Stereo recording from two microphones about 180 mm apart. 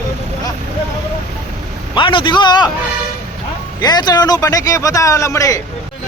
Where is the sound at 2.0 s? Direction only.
25° left (ahead or behind).